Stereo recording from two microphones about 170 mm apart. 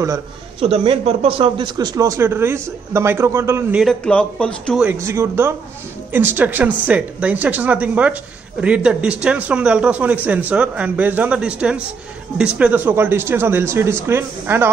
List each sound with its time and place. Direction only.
0.6 s speech: 35° right (ahead or behind); by 3.8 s 15° right (ahead or behind)
3.8 s a man's voice: 5° left (ahead or behind)
4.7 s speech: 10° right (ahead or behind)